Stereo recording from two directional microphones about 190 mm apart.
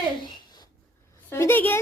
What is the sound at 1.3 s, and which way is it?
Speech, 10° left (ahead or behind).